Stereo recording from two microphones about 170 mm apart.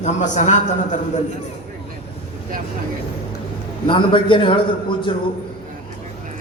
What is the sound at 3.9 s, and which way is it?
Speech, 30° left (ahead or behind).